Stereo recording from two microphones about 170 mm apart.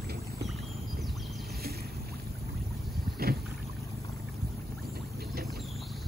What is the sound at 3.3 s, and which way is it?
Boat, 70° right (ahead or behind).